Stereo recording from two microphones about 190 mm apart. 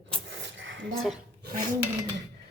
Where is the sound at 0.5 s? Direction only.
75° right (ahead or behind).